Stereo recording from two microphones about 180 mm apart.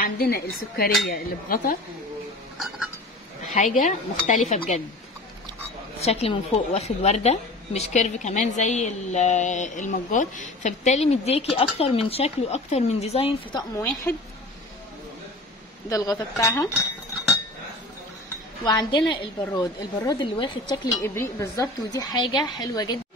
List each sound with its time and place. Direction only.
0.0 s speech: 60° left (ahead or behind)
2.5 s a sound: centre (ahead or behind)
3.5 s speech: 45° left (ahead or behind)
5.9 s a woman's voice: 35° left (ahead or behind)
13.7 s a woman's voice: 15° left (ahead or behind)
15.9 s a woman's voice: 20° left (ahead or behind)
18.6 s a woman's voice: 20° left (ahead or behind)
19.4 s a woman's voice: 15° left (ahead or behind)